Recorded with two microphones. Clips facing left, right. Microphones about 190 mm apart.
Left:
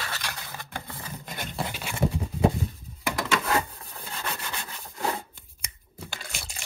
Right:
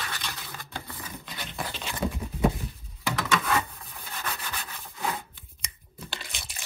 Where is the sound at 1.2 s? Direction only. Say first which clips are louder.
Left 4 dB; 50° left (ahead or behind).